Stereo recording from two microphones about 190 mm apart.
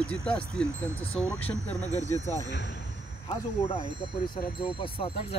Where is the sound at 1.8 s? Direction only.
35° left (ahead or behind).